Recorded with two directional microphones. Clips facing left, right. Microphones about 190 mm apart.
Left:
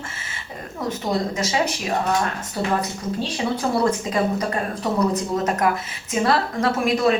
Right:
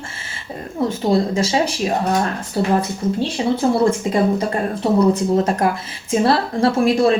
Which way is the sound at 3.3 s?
25° right (ahead or behind).